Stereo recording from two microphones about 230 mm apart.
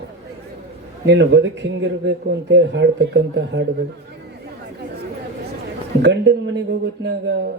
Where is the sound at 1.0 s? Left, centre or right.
Right.